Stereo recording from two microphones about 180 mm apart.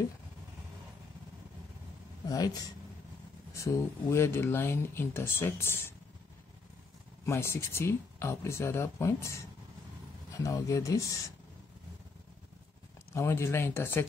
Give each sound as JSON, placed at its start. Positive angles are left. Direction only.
{"t": 2.2, "sound": "speech", "side_deg": 20}
{"t": 3.5, "sound": "speech", "side_deg": 15}
{"t": 7.2, "sound": "speech", "side_deg": 15}
{"t": 13.1, "sound": "speech", "side_deg": 15}